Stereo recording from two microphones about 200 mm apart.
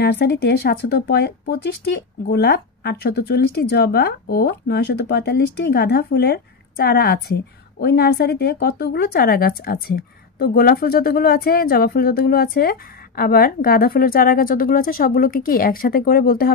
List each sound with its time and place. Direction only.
0.0 s speech: 55° left (ahead or behind)